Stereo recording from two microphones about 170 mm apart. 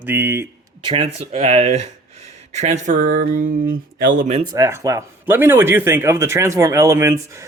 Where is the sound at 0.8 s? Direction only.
30° right (ahead or behind); by 4.4 s 50° right (ahead or behind).